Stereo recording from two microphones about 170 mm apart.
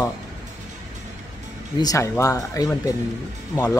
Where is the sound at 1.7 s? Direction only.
20° left (ahead or behind).